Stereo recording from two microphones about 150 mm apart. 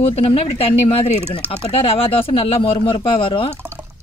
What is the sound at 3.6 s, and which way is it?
Drip, 15° right (ahead or behind).